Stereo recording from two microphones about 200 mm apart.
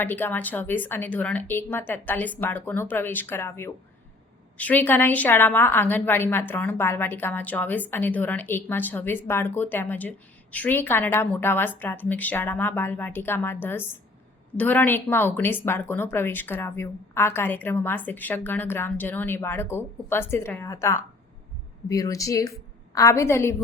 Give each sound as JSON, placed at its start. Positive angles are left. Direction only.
{"t": 0.0, "sound": "a woman's voice", "side_deg": 10}